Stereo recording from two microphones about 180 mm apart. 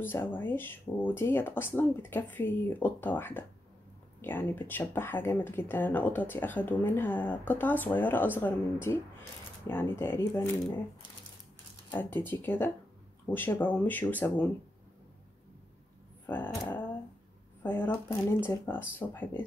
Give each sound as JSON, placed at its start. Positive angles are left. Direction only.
{"t": 0.0, "sound": "speech", "side_deg": 10}
{"t": 11.9, "sound": "speech", "side_deg": 10}
{"t": 16.3, "sound": "speech", "side_deg": 10}